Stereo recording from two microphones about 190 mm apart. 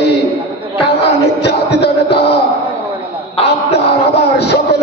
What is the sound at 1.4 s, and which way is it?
Music, 60° left (ahead or behind).